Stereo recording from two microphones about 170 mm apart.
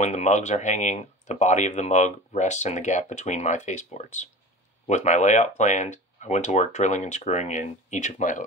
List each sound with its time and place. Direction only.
0.0 s speech: 45° left (ahead or behind)